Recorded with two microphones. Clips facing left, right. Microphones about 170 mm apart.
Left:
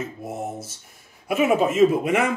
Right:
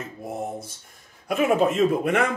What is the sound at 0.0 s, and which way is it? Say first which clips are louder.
Speech: left 1 dB; centre (ahead or behind).